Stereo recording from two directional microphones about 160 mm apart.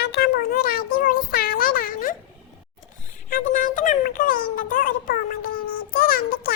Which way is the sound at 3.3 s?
55° left (ahead or behind).